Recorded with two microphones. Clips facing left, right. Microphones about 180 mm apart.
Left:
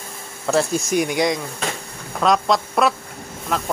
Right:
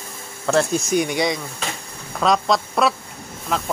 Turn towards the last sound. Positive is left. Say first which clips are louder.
# even
turn(degrees=0)  # may be behind; listen again after turning